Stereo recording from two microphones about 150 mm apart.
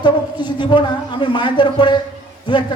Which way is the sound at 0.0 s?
30° left (ahead or behind).